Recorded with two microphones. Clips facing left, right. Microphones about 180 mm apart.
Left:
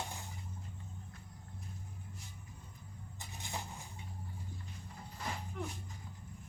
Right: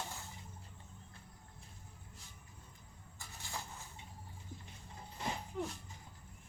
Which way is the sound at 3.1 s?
20° left (ahead or behind).